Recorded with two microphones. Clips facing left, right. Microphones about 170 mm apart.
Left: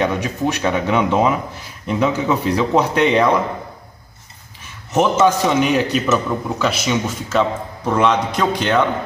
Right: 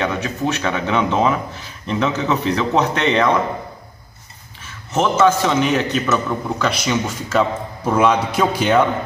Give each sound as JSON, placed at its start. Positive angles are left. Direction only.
{"t": 0.0, "sound": "speech", "side_deg": 15}
{"t": 4.9, "sound": "a man's voice", "side_deg": 15}